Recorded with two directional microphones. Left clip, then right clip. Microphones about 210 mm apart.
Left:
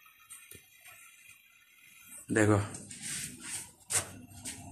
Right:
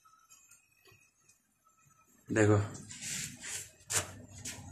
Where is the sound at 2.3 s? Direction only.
30° left (ahead or behind).